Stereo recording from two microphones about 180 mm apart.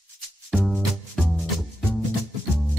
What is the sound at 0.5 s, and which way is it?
Music, centre (ahead or behind).